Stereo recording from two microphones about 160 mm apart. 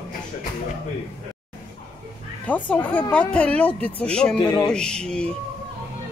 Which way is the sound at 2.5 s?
10° left (ahead or behind).